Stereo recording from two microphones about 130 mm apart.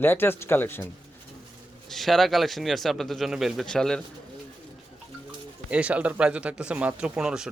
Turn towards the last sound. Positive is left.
turn(degrees=-5)  # may be behind; listen again after turning